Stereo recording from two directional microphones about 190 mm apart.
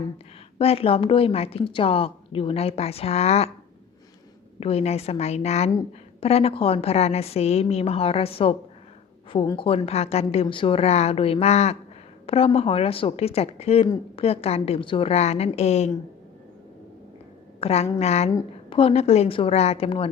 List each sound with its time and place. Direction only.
0.6 s a woman's voice: 30° left (ahead or behind)
4.6 s a woman's voice: 35° left (ahead or behind)
17.6 s a woman's voice: 30° left (ahead or behind)